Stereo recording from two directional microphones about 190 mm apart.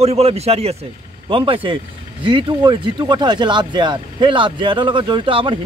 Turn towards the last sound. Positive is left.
turn(degrees=-25)  # may be behind; listen again after turning